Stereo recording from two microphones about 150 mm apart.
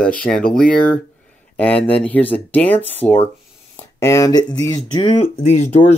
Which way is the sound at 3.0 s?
10° left (ahead or behind).